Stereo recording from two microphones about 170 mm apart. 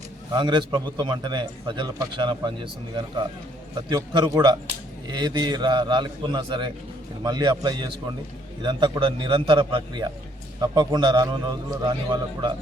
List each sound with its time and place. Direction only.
0.3 s a man's voice: 25° right (ahead or behind)
3.8 s a man's voice: 25° right (ahead or behind)